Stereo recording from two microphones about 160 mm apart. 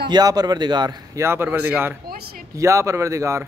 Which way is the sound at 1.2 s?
15° right (ahead or behind).